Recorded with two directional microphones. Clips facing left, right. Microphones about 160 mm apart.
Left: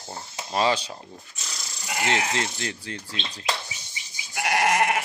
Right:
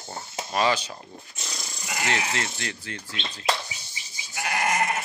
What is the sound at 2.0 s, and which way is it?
Speech, 30° left (ahead or behind).